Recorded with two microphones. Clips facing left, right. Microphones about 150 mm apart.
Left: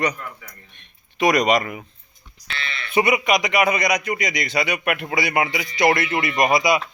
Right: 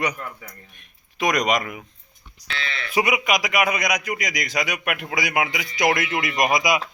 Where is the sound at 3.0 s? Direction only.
Centre (ahead or behind).